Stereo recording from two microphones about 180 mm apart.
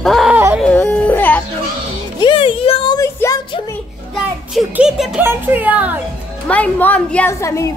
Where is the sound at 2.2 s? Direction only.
30° left (ahead or behind).